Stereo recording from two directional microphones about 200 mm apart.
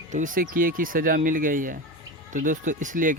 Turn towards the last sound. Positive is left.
turn(degrees=-40)  # may be behind; listen again after turning